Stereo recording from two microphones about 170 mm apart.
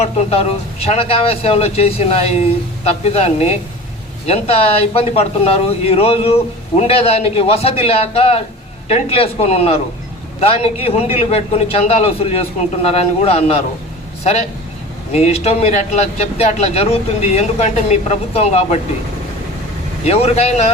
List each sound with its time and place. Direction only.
0.0 s speech: 35° left (ahead or behind)
15.1 s speech: 35° left (ahead or behind)
20.1 s speech: 35° left (ahead or behind)